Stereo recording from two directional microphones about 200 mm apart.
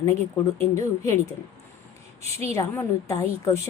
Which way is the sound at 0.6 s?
15° left (ahead or behind).